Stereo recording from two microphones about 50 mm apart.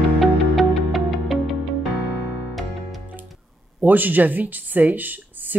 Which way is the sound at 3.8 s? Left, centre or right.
Right.